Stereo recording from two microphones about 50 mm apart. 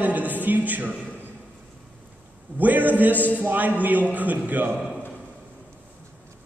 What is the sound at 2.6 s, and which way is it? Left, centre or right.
A woman's voice, right.